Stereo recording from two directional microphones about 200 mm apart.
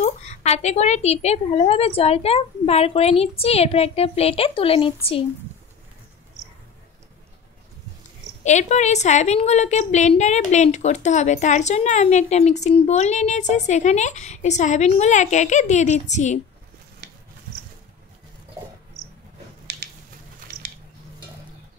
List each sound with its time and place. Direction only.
0.0 s a woman's voice: 35° left (ahead or behind)
8.5 s a woman's voice: 35° left (ahead or behind)